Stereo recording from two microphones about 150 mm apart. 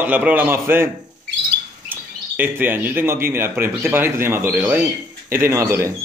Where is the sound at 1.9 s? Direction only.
10° right (ahead or behind).